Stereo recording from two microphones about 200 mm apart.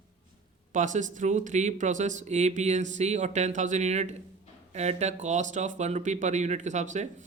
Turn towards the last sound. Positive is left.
turn(degrees=-35)  # may be behind; listen again after turning